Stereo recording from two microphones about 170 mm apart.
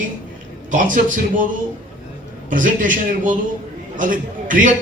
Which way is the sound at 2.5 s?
50° right (ahead or behind).